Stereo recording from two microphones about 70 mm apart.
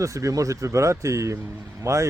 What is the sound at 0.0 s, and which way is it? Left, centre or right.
Speech, right.